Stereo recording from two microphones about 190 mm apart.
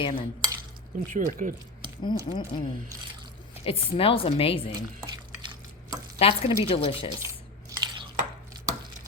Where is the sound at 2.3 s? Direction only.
30° left (ahead or behind).